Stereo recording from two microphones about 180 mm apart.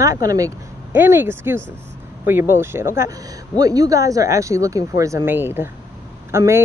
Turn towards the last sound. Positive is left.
turn(degrees=-15)  # may be behind; listen again after turning